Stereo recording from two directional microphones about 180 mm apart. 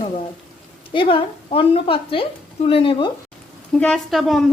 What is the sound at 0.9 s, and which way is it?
A woman's voice, 30° left (ahead or behind).